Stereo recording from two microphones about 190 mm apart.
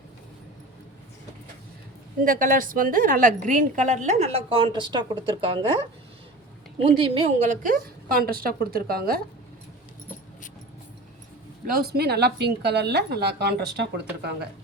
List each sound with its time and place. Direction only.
2.2 s a woman's voice: 45° right (ahead or behind); by 5.8 s 25° right (ahead or behind)
6.8 s a woman's voice: 30° right (ahead or behind); by 9.2 s 50° right (ahead or behind)
11.6 s speech: 50° right (ahead or behind)